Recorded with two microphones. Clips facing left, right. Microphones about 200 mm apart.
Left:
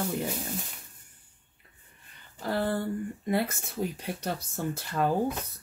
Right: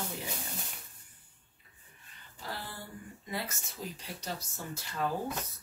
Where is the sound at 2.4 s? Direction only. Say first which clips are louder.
Left 14 dB; 60° left (ahead or behind).